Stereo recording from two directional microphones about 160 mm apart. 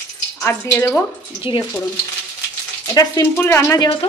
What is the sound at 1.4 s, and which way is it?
Speech, 30° left (ahead or behind).